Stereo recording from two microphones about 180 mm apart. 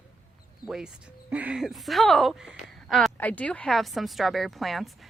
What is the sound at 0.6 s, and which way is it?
A woman's voice, 5° right (ahead or behind).